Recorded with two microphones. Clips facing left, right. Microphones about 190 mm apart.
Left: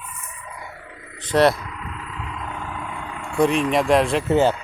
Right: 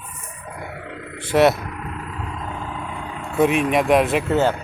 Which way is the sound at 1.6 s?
50° right (ahead or behind).